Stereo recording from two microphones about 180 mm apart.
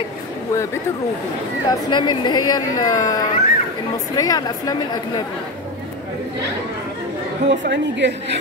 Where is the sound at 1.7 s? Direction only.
25° left (ahead or behind).